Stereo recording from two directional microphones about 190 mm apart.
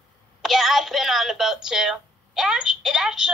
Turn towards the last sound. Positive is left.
turn(degrees=-5)  # may be behind; listen again after turning